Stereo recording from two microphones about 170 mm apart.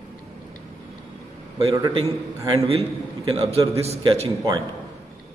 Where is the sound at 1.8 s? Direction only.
20° right (ahead or behind).